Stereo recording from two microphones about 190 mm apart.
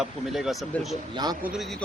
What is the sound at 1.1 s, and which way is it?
Speech, 20° right (ahead or behind).